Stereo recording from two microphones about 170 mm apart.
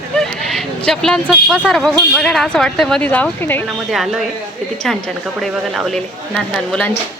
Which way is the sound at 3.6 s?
Centre (ahead or behind).